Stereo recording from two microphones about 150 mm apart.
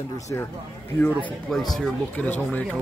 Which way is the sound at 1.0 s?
Centre (ahead or behind).